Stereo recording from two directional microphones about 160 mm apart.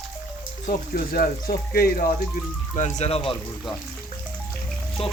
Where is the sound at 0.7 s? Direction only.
65° left (ahead or behind).